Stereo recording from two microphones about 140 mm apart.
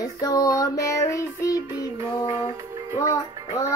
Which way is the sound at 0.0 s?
25° left (ahead or behind).